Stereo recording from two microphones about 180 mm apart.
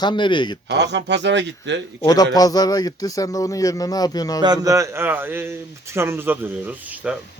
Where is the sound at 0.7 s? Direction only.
70° right (ahead or behind).